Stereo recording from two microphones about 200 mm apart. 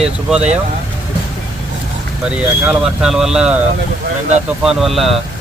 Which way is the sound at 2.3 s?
5° right (ahead or behind).